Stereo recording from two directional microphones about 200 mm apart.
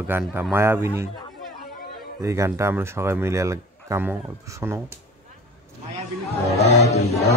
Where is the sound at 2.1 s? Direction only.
15° right (ahead or behind).